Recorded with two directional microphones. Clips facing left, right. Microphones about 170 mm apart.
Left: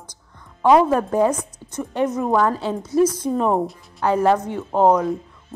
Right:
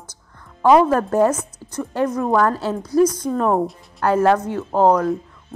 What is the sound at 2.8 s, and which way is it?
Speech, 25° left (ahead or behind).